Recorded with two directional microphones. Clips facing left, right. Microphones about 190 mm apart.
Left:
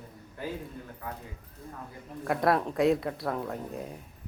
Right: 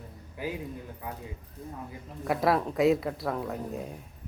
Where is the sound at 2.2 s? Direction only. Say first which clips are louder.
Even; centre (ahead or behind).